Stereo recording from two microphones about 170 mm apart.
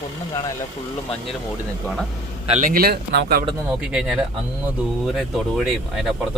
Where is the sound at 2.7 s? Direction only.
65° right (ahead or behind).